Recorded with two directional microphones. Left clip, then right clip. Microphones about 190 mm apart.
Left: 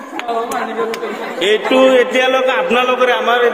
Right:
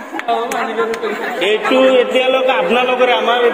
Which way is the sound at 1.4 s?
25° left (ahead or behind).